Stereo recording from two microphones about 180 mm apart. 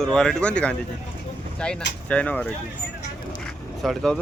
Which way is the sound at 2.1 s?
5° left (ahead or behind).